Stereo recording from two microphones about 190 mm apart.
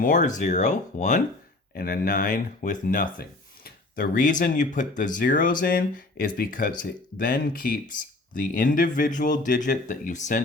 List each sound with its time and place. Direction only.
0.0 s speech: 40° left (ahead or behind)
1.7 s speech: 50° left (ahead or behind)